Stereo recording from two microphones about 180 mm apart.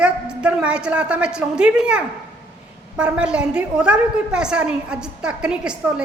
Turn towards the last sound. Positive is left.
turn(degrees=-5)  # may be behind; listen again after turning